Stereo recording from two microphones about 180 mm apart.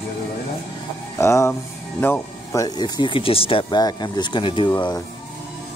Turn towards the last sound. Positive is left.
turn(degrees=25)  # may be behind; listen again after turning